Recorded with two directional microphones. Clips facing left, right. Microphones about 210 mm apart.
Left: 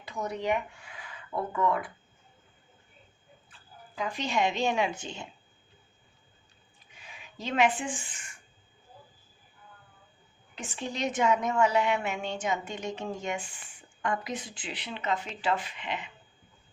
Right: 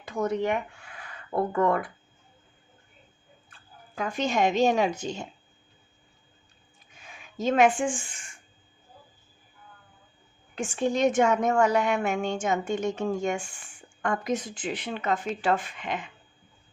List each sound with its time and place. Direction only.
0.0 s speech: 50° right (ahead or behind)
1.3 s speech: 60° right (ahead or behind)
3.9 s speech: 50° right (ahead or behind)
6.9 s a sound: 45° right (ahead or behind)
10.5 s a woman's voice: 50° right (ahead or behind)